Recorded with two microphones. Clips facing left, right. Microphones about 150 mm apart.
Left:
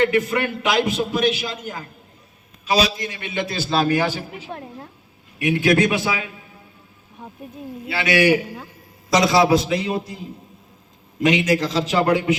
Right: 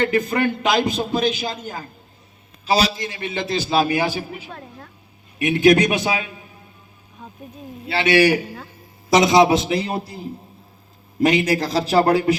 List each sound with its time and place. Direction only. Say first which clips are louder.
0.0 s a man's voice: even; 30° right (ahead or behind)
2.6 s a man's voice: even; 30° right (ahead or behind)
3.5 s a man's voice: right 1 dB; 15° right (ahead or behind)
7.2 s speech: left 2 dB; 15° left (ahead or behind)
7.9 s a man's voice: right 2 dB; 30° right (ahead or behind)
11.2 s a man's voice: right 1 dB; 35° right (ahead or behind)